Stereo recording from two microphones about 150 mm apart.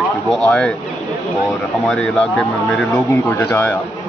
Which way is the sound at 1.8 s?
5° left (ahead or behind).